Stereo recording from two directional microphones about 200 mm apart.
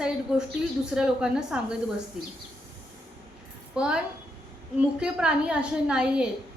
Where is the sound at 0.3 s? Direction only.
5° right (ahead or behind).